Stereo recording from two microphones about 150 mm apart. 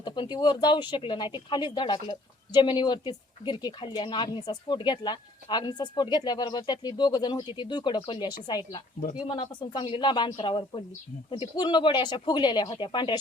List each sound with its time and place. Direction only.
0.0 s a woman's voice: 30° left (ahead or behind)